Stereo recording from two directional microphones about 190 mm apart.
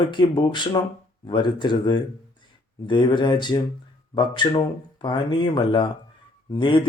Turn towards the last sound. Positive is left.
turn(degrees=25)  # may be behind; listen again after turning